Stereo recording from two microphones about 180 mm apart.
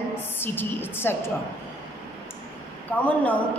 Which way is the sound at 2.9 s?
10° left (ahead or behind).